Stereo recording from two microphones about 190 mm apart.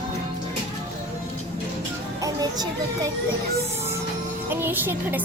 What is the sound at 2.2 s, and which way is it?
Speech, 20° right (ahead or behind).